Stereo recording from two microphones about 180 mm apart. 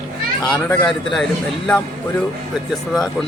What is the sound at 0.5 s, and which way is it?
Speech, 15° left (ahead or behind).